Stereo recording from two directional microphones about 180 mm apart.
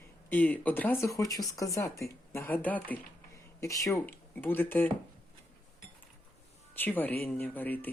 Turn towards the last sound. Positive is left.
turn(degrees=10)  # may be behind; listen again after turning